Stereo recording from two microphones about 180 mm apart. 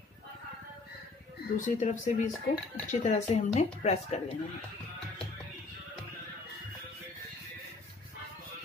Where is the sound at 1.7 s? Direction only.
45° left (ahead or behind).